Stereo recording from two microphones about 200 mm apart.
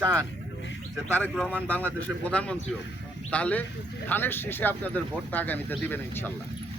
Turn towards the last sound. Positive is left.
turn(degrees=10)  # may be behind; listen again after turning